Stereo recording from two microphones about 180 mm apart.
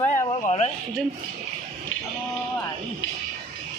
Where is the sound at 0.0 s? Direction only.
35° left (ahead or behind).